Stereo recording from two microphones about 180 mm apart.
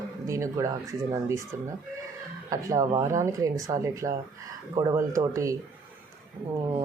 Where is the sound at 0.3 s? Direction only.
15° right (ahead or behind).